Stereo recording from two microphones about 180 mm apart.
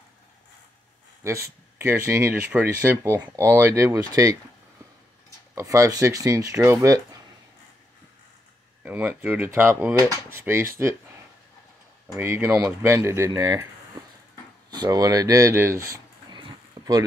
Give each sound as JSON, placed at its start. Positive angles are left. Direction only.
{"t": 1.2, "sound": "speech", "side_deg": -15}
{"t": 5.5, "sound": "speech", "side_deg": -15}
{"t": 8.8, "sound": "speech", "side_deg": -10}
{"t": 12.2, "sound": "speech", "side_deg": -15}
{"t": 14.7, "sound": "speech", "side_deg": -20}
{"t": 16.3, "sound": "a sound", "side_deg": -20}